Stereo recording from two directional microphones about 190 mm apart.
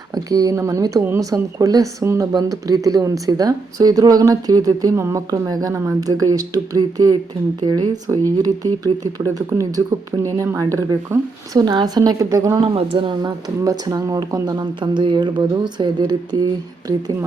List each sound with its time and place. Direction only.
0.1 s speech: 20° right (ahead or behind)
12.7 s speech: 30° right (ahead or behind)